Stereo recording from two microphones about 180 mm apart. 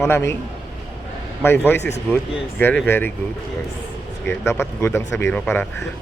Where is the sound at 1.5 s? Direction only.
10° left (ahead or behind).